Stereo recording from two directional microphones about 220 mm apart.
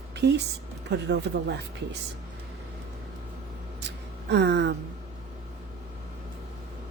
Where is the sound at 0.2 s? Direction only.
50° right (ahead or behind).